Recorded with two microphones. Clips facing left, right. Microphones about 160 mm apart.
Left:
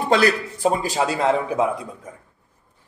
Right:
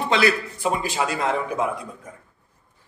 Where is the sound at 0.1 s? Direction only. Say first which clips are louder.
Left 3 dB; 40° left (ahead or behind).